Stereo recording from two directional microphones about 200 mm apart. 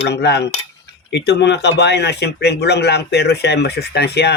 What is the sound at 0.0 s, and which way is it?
A man's voice, 60° left (ahead or behind).